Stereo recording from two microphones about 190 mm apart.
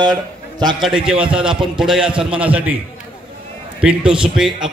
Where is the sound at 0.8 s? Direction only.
5° right (ahead or behind).